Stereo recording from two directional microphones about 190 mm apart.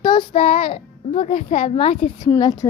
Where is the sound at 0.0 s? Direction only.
25° left (ahead or behind).